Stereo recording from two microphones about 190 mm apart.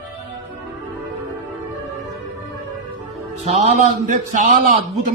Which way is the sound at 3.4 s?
35° right (ahead or behind).